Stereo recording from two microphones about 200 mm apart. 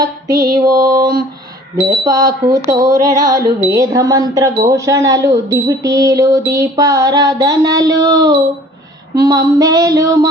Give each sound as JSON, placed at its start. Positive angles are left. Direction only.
{"t": 0.0, "sound": "speech", "side_deg": -20}
{"t": 3.0, "sound": "music", "side_deg": -20}
{"t": 3.6, "sound": "speech", "side_deg": -15}